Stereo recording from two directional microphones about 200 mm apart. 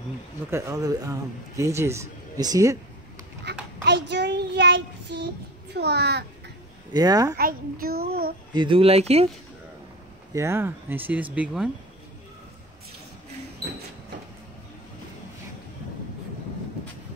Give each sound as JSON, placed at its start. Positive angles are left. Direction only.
{"t": 0.5, "sound": "speech", "side_deg": -15}
{"t": 3.8, "sound": "child singing", "side_deg": -60}
{"t": 5.7, "sound": "a child's voice", "side_deg": -55}
{"t": 6.9, "sound": "speech", "side_deg": -20}
{"t": 7.3, "sound": "a child's voice", "side_deg": -45}
{"t": 8.5, "sound": "speech", "side_deg": -25}
{"t": 10.3, "sound": "speech", "side_deg": -15}